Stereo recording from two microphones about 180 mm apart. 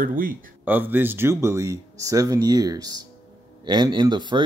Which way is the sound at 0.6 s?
10° right (ahead or behind).